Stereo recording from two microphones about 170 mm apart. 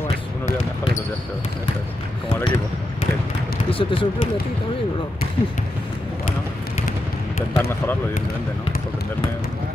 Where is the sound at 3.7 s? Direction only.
30° left (ahead or behind).